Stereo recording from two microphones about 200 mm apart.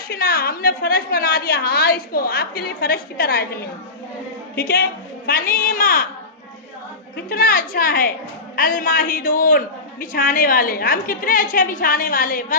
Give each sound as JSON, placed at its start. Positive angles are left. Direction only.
{"t": 0.1, "sound": "a man's voice", "side_deg": 50}
{"t": 7.3, "sound": "a man's voice", "side_deg": 45}